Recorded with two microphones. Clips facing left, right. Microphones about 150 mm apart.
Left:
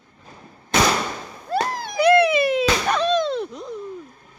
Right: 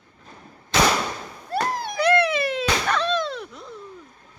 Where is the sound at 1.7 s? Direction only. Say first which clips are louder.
Right 2 dB; 90° left.